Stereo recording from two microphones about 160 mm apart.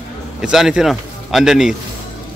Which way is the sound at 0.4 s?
5° right (ahead or behind).